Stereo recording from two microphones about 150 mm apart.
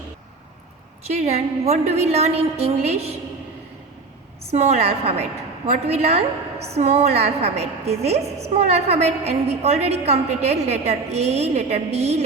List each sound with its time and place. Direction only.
1.0 s a woman's voice: 45° right (ahead or behind)
4.5 s a woman's voice: 45° right (ahead or behind)